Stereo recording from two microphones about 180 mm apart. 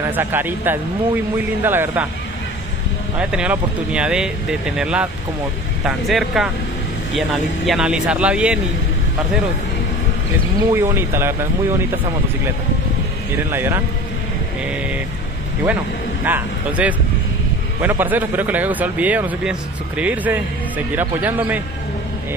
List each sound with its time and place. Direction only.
0.0 s speech: 10° right (ahead or behind)
3.2 s speech: 5° right (ahead or behind)
10.7 s speech: 15° right (ahead or behind)
13.4 s speech: 10° right (ahead or behind)
16.3 s speech: 10° right (ahead or behind)